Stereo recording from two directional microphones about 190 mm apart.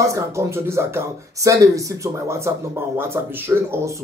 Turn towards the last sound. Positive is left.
turn(degrees=-10)  # may be behind; listen again after turning